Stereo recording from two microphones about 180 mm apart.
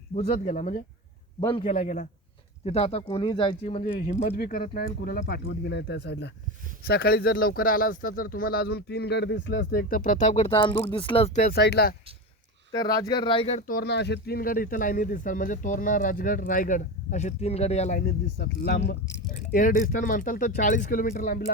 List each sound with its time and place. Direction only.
0.1 s speech: 35° left (ahead or behind)
0.3 s speech: 45° left (ahead or behind)
1.4 s speech: 30° left (ahead or behind)
1.7 s speech: 45° left (ahead or behind)
4.3 s speech: 60° left (ahead or behind)
6.8 s speech: 60° left (ahead or behind); by 11.4 s 30° left (ahead or behind)
11.4 s speech: 65° left (ahead or behind)
12.7 s speech: 20° left (ahead or behind)
13.7 s speech: 60° left (ahead or behind); by 18.0 s 40° left (ahead or behind)
18.0 s speech: 65° left (ahead or behind)
19.5 s speech: 50° left (ahead or behind)